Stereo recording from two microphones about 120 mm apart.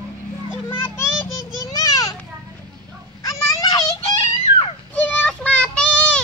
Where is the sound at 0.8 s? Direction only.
20° left (ahead or behind).